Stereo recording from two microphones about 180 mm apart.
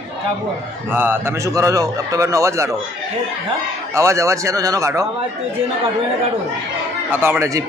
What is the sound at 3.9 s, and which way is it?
A man's voice, 15° right (ahead or behind).